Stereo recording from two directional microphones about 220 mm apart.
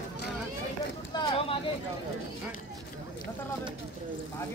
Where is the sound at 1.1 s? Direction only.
25° left (ahead or behind).